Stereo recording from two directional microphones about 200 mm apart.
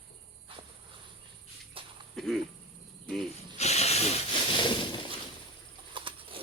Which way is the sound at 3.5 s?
30° left (ahead or behind).